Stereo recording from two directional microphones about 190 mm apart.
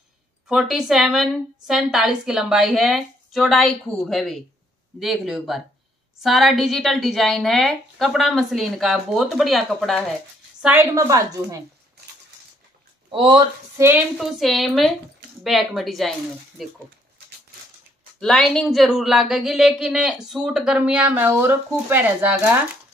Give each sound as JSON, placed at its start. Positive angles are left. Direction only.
{"t": 0.5, "sound": "a woman's voice", "side_deg": 0}
{"t": 10.6, "sound": "a woman's voice", "side_deg": -10}
{"t": 13.1, "sound": "speech", "side_deg": -25}
{"t": 13.7, "sound": "a woman's voice", "side_deg": -10}
{"t": 14.1, "sound": "a woman's voice", "side_deg": 0}
{"t": 18.2, "sound": "a woman's voice", "side_deg": 5}